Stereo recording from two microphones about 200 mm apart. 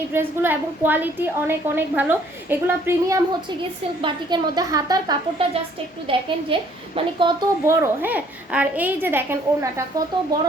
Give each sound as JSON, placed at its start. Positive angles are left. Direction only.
{"t": 0.1, "sound": "a woman's voice", "side_deg": -10}